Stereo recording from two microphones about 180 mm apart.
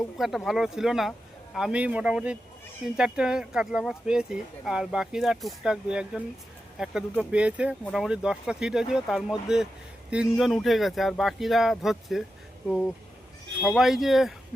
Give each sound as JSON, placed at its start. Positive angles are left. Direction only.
{"t": 0.0, "sound": "speech", "side_deg": 0}